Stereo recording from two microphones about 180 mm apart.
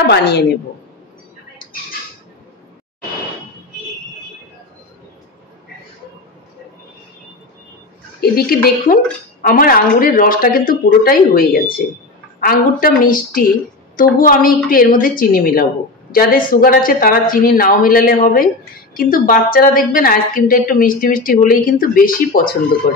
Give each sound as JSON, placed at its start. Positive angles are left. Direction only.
{"t": 0.0, "sound": "a woman's voice", "side_deg": 65}
{"t": 8.2, "sound": "a woman's voice", "side_deg": 60}